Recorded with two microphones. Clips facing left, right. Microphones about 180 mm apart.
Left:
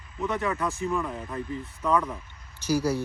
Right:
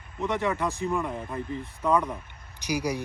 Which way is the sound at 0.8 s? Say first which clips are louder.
Even; 15° right (ahead or behind).